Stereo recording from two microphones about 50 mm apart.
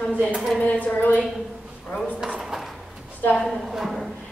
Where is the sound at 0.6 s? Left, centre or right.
Left.